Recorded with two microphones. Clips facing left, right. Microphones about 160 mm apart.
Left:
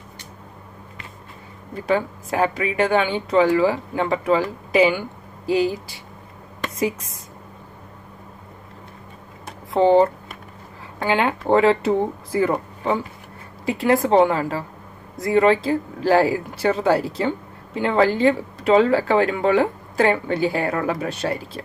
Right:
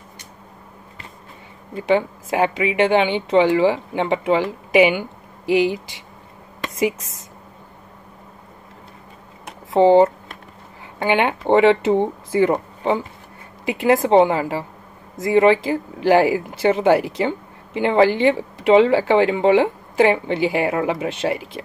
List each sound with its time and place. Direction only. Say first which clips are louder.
2.3 s speech: right 2 dB; 20° right (ahead or behind)
9.7 s speech: right 3 dB; 25° right (ahead or behind)
13.7 s speech: right 2 dB; 20° right (ahead or behind)